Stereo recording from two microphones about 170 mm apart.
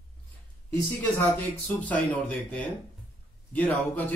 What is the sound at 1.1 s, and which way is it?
Speech, 10° left (ahead or behind).